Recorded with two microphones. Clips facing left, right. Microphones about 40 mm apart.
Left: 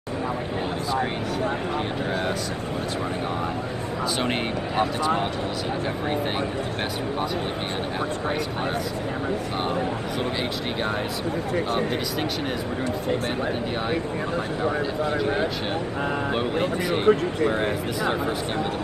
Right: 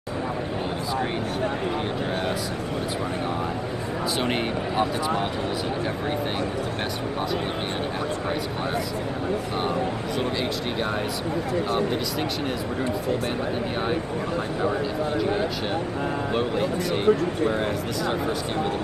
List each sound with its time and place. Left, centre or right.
4.2 s speech: centre
17.0 s speech: left